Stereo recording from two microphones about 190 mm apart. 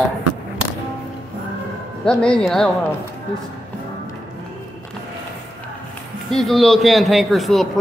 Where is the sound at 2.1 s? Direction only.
5° left (ahead or behind).